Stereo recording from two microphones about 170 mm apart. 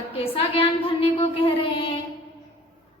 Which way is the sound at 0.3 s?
35° left (ahead or behind).